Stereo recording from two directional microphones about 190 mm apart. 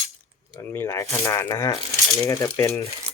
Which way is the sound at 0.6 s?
15° left (ahead or behind).